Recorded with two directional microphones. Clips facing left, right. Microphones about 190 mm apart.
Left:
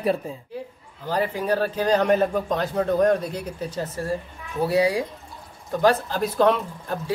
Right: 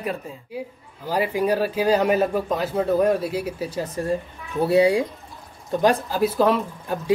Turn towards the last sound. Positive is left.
turn(degrees=-5)  # may be behind; listen again after turning